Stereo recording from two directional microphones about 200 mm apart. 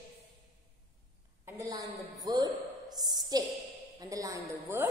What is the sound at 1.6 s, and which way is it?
Speech, 20° right (ahead or behind).